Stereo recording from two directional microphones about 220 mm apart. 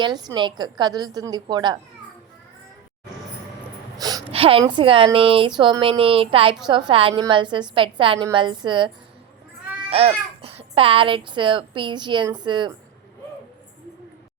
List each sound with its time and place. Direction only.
0.0 s a child's voice: 20° right (ahead or behind)
3.9 s a child's voice: 20° right (ahead or behind)
9.9 s a child's voice: 25° right (ahead or behind)